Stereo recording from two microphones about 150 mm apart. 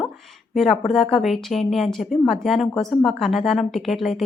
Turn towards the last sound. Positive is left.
turn(degrees=0)  # may be behind; listen again after turning